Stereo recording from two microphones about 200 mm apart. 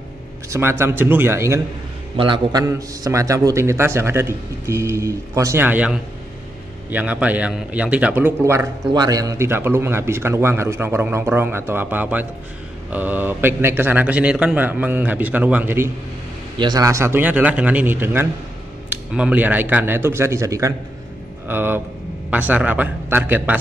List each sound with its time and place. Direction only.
0.5 s a man's voice: 10° right (ahead or behind)
2.1 s a man's voice: 25° right (ahead or behind); by 23.6 s 10° right (ahead or behind)